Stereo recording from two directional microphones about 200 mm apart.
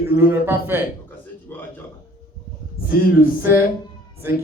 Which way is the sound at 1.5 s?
10° left (ahead or behind).